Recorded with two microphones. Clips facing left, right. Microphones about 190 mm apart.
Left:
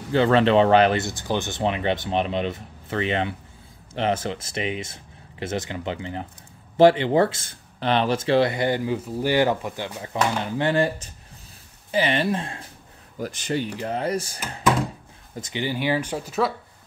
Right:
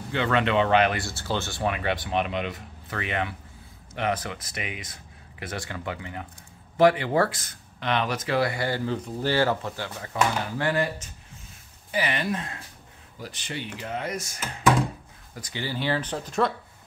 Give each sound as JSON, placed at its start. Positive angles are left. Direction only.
{"t": 0.1, "sound": "speech", "side_deg": 35}
{"t": 1.0, "sound": "speech", "side_deg": 15}
{"t": 13.2, "sound": "speech", "side_deg": 45}
{"t": 15.3, "sound": "speech", "side_deg": 20}